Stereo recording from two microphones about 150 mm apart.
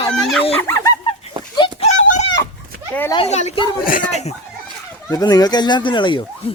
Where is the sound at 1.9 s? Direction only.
55° left (ahead or behind).